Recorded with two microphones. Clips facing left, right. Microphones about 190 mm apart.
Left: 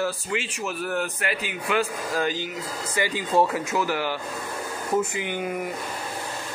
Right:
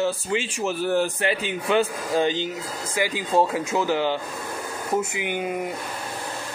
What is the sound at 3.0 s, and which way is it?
Speech, 15° right (ahead or behind).